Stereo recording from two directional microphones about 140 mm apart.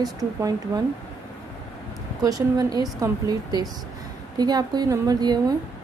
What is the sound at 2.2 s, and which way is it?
A woman's voice, 25° right (ahead or behind).